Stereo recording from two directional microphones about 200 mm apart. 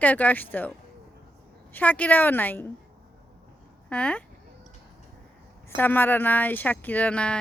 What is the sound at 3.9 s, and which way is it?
Speech, 5° left (ahead or behind).